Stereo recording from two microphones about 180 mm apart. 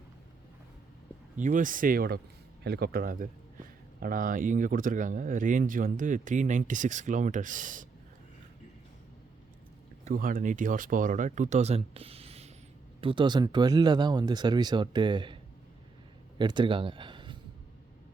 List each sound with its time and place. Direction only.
1.4 s speech: 45° right (ahead or behind)
10.0 s speech: 50° right (ahead or behind); by 15.4 s 25° right (ahead or behind)
16.4 s a man's voice: 25° right (ahead or behind)